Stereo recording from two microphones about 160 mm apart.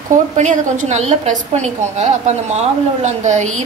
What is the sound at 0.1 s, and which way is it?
A woman's voice, 50° right (ahead or behind).